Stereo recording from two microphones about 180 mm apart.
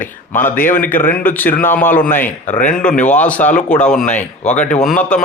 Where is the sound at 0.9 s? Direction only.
10° left (ahead or behind).